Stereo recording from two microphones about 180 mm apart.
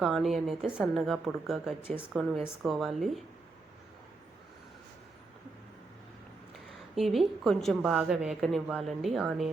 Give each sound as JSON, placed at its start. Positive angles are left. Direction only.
{"t": 0.0, "sound": "a woman's voice", "side_deg": 0}
{"t": 6.9, "sound": "a woman's voice", "side_deg": 0}